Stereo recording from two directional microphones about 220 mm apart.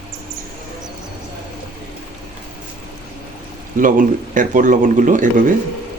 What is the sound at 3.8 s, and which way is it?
Speech, 35° right (ahead or behind).